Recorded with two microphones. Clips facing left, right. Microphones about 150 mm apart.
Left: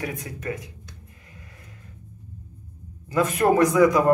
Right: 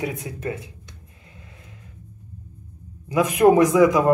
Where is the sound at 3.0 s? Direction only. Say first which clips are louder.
Right 5 dB; 15° right (ahead or behind).